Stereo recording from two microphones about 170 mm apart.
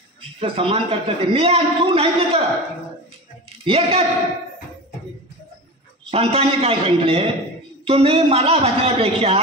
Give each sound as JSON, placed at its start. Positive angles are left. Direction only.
{"t": 0.4, "sound": "a man's voice", "side_deg": -35}
{"t": 3.6, "sound": "a man's voice", "side_deg": -35}
{"t": 6.0, "sound": "a man's voice", "side_deg": -35}